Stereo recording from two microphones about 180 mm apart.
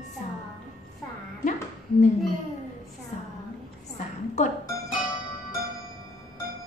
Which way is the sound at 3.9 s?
40° left (ahead or behind).